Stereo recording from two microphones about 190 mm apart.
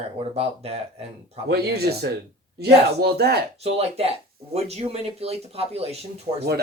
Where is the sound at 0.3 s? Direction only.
35° right (ahead or behind).